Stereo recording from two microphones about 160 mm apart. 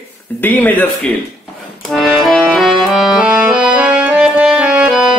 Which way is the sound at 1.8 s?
Centre (ahead or behind).